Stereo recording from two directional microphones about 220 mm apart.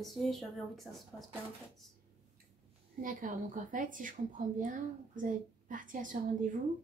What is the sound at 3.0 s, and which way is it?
A woman's voice, 35° right (ahead or behind).